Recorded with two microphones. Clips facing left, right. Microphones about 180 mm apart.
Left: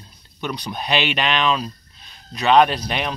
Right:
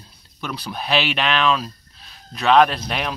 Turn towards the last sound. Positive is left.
turn(degrees=0)  # may be behind; listen again after turning